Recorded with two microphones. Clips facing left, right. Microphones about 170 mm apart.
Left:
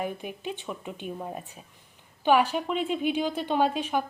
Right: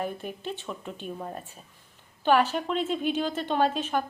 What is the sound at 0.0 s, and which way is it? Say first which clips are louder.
A woman's voice: even; 10° left (ahead or behind).